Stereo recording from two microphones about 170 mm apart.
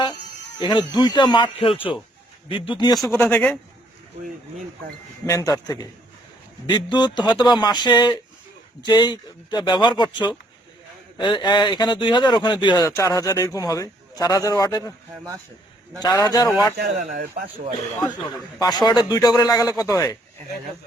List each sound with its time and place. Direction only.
0.6 s speech: 25° left (ahead or behind)
3.1 s speech: 15° left (ahead or behind)
5.2 s speech: 20° left (ahead or behind)
16.1 s speech: 20° left (ahead or behind)
16.7 s speech: 60° right (ahead or behind)
18.6 s speech: 25° left (ahead or behind)